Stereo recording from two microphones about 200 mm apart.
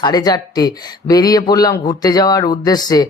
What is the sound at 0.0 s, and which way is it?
Speech, 20° left (ahead or behind).